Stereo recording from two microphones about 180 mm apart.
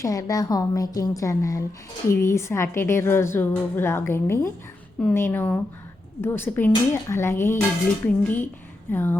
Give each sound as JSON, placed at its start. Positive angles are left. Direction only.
{"t": 0.0, "sound": "a woman's voice", "side_deg": 20}